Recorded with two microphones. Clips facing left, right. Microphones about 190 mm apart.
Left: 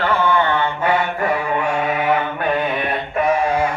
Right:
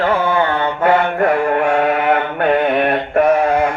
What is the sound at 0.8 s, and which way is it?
Mantra, 55° right (ahead or behind).